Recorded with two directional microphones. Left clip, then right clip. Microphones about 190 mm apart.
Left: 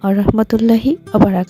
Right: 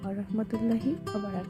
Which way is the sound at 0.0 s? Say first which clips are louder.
Left 19 dB; 60° left (ahead or behind).